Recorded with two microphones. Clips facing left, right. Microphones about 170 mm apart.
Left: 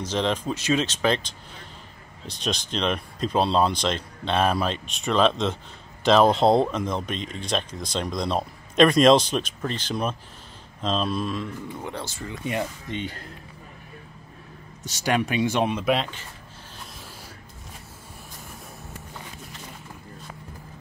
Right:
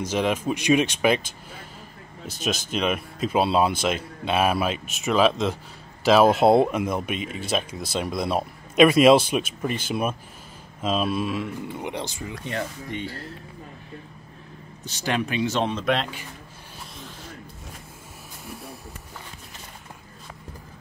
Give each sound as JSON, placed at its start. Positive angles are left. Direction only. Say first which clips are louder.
{"t": 0.0, "sound": "speech", "louder": "right 2 dB", "side_deg": -10}
{"t": 11.8, "sound": "speech", "louder": "right 2 dB", "side_deg": -15}
{"t": 12.4, "sound": "speech", "louder": "left 3 dB", "side_deg": 15}
{"t": 15.0, "sound": "speech", "louder": "left 2 dB", "side_deg": 15}